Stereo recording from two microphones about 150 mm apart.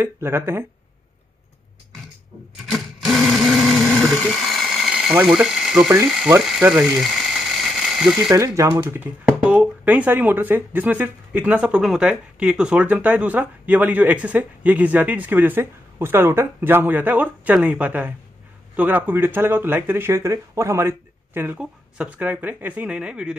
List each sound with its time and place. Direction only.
0.0 s speech: 15° right (ahead or behind)
2.7 s a sound: centre (ahead or behind)
5.1 s ratchet: 5° right (ahead or behind)
8.3 s speech: 20° right (ahead or behind)
9.4 s speech: 5° right (ahead or behind)